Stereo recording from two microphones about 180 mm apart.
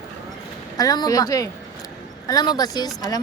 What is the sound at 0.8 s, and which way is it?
A woman's voice, 20° left (ahead or behind).